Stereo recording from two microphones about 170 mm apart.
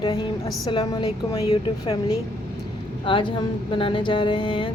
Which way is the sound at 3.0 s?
30° left (ahead or behind).